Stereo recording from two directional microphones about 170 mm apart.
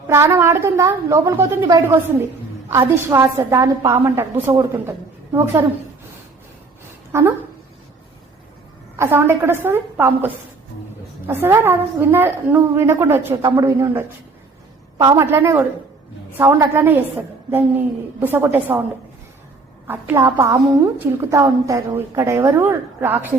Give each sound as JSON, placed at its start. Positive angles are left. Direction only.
{"t": 0.1, "sound": "a woman's voice", "side_deg": -15}
{"t": 7.1, "sound": "speech", "side_deg": -15}
{"t": 9.0, "sound": "a woman's voice", "side_deg": -15}
{"t": 19.9, "sound": "a woman's voice", "side_deg": -10}